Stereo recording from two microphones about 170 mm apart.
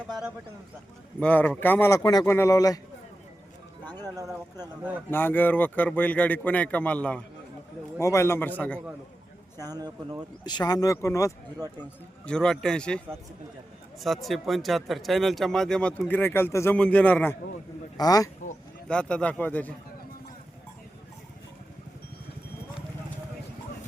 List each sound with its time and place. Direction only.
0.1 s a sound: 5° right (ahead or behind)
1.2 s a man's voice: 10° left (ahead or behind)
3.8 s music: 25° right (ahead or behind)
4.8 s speech: 10° right (ahead or behind)
5.1 s a man's voice: 10° left (ahead or behind)
9.6 s speech: 20° right (ahead or behind)
10.4 s speech: 25° left (ahead or behind)
12.2 s speech: 5° left (ahead or behind)
14.0 s speech: centre (ahead or behind)
17.9 s speech: 20° left (ahead or behind)
18.9 s a man's voice: 5° left (ahead or behind)